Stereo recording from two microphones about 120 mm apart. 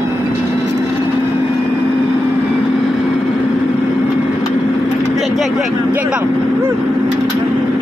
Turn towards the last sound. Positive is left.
turn(degrees=-10)  # may be behind; listen again after turning